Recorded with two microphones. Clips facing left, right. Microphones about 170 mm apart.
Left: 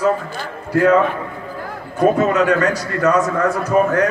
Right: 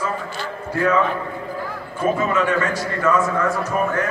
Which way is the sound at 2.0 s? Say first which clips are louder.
Left 6 dB; 70° left (ahead or behind).